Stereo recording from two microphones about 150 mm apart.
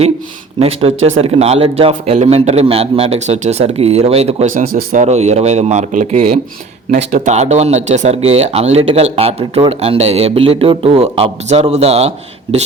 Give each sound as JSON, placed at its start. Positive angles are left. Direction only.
{"t": 0.6, "sound": "speech", "side_deg": -40}
{"t": 4.5, "sound": "speech", "side_deg": -65}
{"t": 5.0, "sound": "speech", "side_deg": -45}